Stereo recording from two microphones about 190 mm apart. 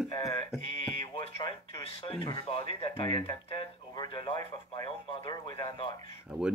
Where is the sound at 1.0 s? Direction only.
25° left (ahead or behind).